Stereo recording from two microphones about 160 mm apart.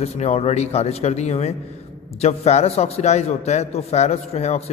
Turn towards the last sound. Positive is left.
turn(degrees=40)  # may be behind; listen again after turning